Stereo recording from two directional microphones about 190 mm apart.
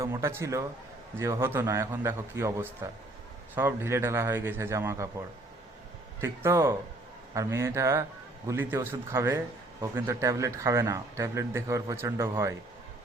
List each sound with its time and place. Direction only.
0.0 s speech: 15° right (ahead or behind)
6.1 s speech: 10° right (ahead or behind)